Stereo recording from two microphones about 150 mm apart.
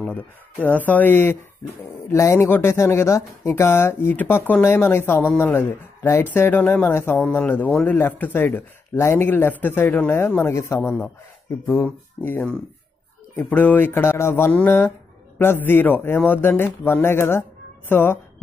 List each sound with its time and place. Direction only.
0.0 s speech: 10° left (ahead or behind)